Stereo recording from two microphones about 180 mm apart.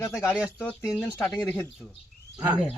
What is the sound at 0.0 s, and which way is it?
Speech, 5° left (ahead or behind).